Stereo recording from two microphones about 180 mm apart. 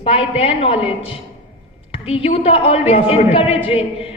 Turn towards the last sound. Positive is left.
turn(degrees=30)  # may be behind; listen again after turning